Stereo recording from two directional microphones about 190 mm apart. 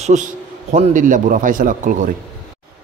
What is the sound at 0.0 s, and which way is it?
Mantra, 40° right (ahead or behind).